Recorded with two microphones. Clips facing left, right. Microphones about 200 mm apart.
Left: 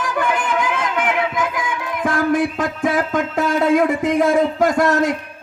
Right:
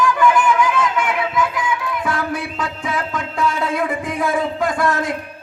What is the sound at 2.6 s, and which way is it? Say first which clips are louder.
Music: left 5 dB; 50° left (ahead or behind).